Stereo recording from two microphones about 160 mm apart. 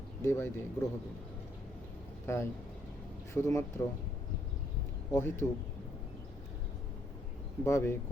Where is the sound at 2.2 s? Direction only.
15° left (ahead or behind).